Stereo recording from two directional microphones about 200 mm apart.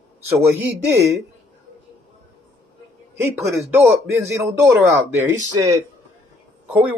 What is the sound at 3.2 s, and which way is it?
A man's voice, 15° right (ahead or behind).